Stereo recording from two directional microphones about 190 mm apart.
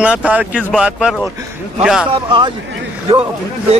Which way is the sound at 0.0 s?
5° right (ahead or behind).